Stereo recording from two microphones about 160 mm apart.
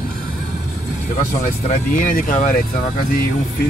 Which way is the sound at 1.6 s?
55° left (ahead or behind).